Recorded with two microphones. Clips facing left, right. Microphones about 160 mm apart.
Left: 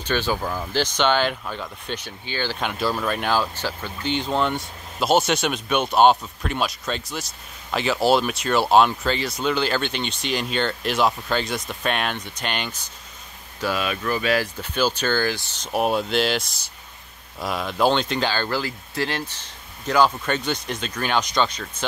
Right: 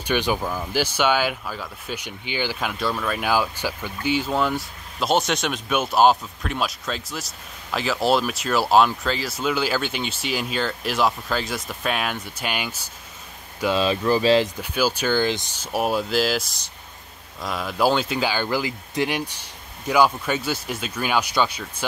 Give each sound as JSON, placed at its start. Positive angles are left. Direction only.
{"t": 0.0, "sound": "speech", "side_deg": -15}
{"t": 2.6, "sound": "speech", "side_deg": 0}
{"t": 13.7, "sound": "speech", "side_deg": -30}
{"t": 14.6, "sound": "speech", "side_deg": -10}